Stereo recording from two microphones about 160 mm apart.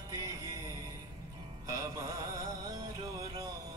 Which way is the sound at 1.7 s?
20° right (ahead or behind).